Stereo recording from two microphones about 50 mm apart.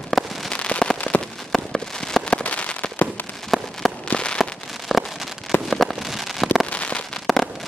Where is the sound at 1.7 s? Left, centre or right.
Centre.